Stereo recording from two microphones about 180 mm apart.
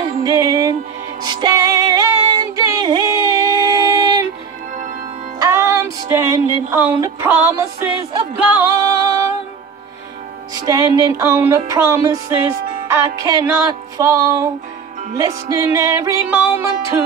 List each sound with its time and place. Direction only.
0.0 s music: 20° right (ahead or behind)
5.4 s music: 15° right (ahead or behind)
8.7 s music: 20° right (ahead or behind)
10.5 s music: 20° right (ahead or behind)